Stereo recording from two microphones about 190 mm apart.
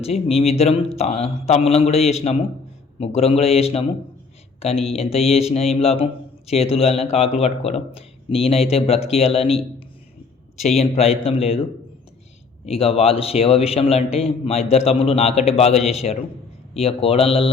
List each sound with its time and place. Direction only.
0.0 s a man's voice: 30° left (ahead or behind)
10.8 s a man's voice: 30° left (ahead or behind)
12.6 s a man's voice: 30° left (ahead or behind)